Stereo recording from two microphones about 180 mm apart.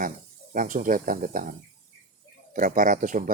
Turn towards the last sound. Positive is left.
turn(degrees=-45)  # may be behind; listen again after turning